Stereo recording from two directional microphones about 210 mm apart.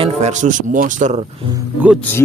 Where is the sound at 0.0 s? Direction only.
35° right (ahead or behind).